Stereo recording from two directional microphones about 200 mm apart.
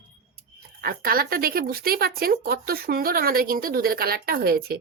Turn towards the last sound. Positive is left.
turn(degrees=-50)  # may be behind; listen again after turning